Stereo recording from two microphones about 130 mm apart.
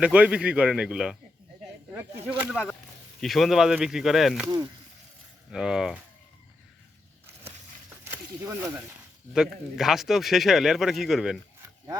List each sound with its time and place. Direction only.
0.0 s a man's voice: 10° right (ahead or behind)
2.3 s a man's voice: 10° right (ahead or behind)
4.4 s speech: 25° right (ahead or behind)
5.5 s speech: 5° right (ahead or behind)
8.4 s speech: 20° right (ahead or behind)
9.3 s speech: 5° right (ahead or behind)